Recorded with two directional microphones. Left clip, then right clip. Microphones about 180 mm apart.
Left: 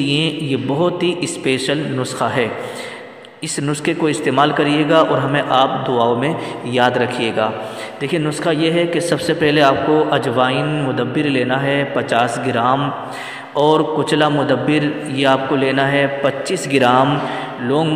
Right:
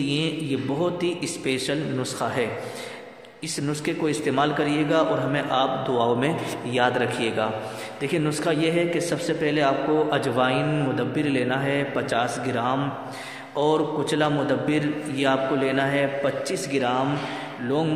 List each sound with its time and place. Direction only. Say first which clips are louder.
0.0 s a man's voice: left 8 dB; 30° left (ahead or behind)
3.6 s a man's voice: left 8 dB; 30° left (ahead or behind)
17.6 s a man's voice: left 7 dB; 25° left (ahead or behind)